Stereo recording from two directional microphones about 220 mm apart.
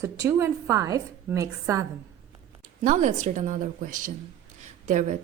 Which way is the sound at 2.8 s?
35° right (ahead or behind).